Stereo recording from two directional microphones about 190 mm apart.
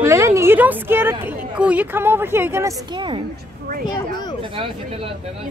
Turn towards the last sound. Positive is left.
turn(degrees=-25)  # may be behind; listen again after turning